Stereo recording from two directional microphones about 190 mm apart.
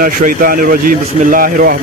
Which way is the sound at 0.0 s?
45° right (ahead or behind).